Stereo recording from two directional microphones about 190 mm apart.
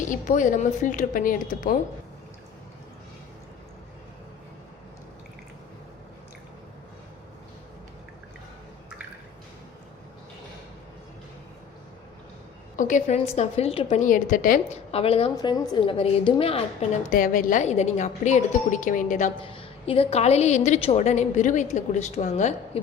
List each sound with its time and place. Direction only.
0.1 s a woman's voice: 40° left (ahead or behind)
12.7 s a woman's voice: 40° left (ahead or behind)
14.0 s a woman's voice: 45° left (ahead or behind)
14.9 s a woman's voice: 30° left (ahead or behind)
17.1 s a woman's voice: 45° left (ahead or behind)
19.4 s a woman's voice: 30° left (ahead or behind)